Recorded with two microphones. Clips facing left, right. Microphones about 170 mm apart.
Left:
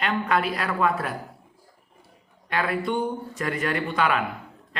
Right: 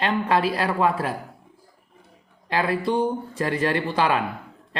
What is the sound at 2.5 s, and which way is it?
Speech, 25° right (ahead or behind).